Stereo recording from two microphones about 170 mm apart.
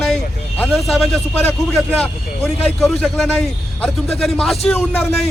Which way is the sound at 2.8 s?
Centre (ahead or behind).